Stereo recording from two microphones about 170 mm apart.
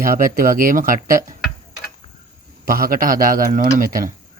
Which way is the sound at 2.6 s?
55° right (ahead or behind).